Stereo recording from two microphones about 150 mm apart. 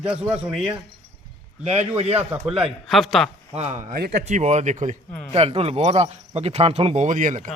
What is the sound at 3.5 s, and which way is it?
A man's voice, 45° right (ahead or behind).